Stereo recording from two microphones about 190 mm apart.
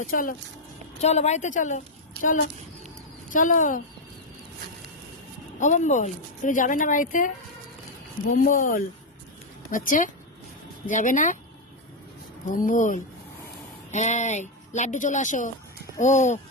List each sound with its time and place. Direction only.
0.0 s speech: 45° left (ahead or behind)
1.0 s speech: 35° left (ahead or behind)
3.2 s speech: 45° left (ahead or behind)
5.5 s speech: 40° left (ahead or behind)
8.3 s speech: 45° left (ahead or behind)
12.5 s speech: 45° left (ahead or behind)